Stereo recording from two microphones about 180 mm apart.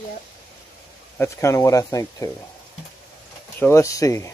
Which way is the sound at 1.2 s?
15° left (ahead or behind).